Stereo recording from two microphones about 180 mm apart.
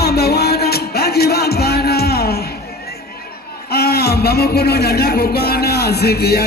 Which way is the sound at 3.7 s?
60° left (ahead or behind).